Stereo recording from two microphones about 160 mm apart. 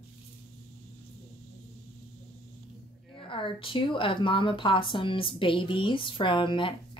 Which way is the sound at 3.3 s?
35° left (ahead or behind).